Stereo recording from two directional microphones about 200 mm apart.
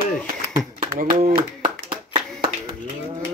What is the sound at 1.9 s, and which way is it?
Clapping, 25° right (ahead or behind).